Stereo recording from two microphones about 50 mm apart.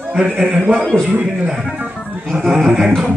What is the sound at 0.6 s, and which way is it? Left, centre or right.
Speech, centre.